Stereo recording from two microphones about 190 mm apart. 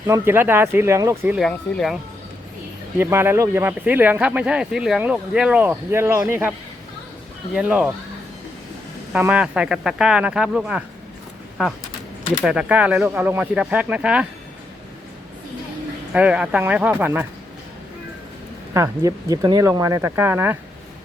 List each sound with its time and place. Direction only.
0.1 s speech: 10° right (ahead or behind)
1.4 s speech: centre (ahead or behind)
3.0 s speech: 10° right (ahead or behind)
7.5 s speech: 5° right (ahead or behind)
9.1 s speech: 10° right (ahead or behind)
16.1 s speech: 5° right (ahead or behind)
18.7 s speech: 15° right (ahead or behind)